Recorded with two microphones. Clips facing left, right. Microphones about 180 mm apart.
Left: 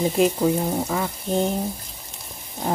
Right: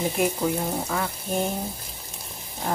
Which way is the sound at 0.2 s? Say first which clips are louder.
Left 6 dB; 20° left (ahead or behind).